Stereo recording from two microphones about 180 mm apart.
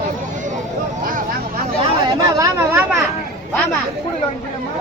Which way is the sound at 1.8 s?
20° right (ahead or behind).